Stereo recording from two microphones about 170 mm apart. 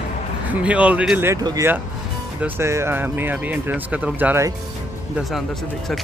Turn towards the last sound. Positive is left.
turn(degrees=-15)  # may be behind; listen again after turning